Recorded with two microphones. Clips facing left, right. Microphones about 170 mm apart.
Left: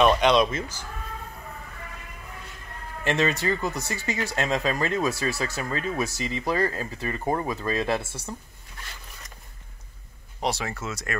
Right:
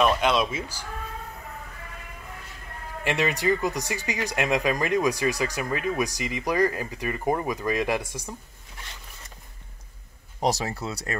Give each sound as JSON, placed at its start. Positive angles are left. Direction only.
{"t": 0.0, "sound": "speech", "side_deg": -5}
{"t": 3.0, "sound": "speech", "side_deg": -15}
{"t": 10.4, "sound": "speech", "side_deg": -35}